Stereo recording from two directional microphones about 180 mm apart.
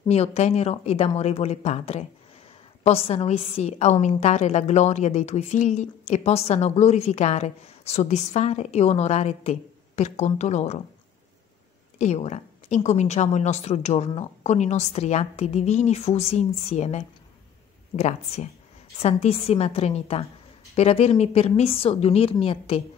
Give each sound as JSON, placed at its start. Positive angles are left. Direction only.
{"t": 0.1, "sound": "a woman's voice", "side_deg": 35}
{"t": 12.0, "sound": "a woman's voice", "side_deg": 40}